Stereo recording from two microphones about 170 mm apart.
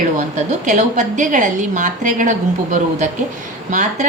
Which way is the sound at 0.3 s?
45° right (ahead or behind).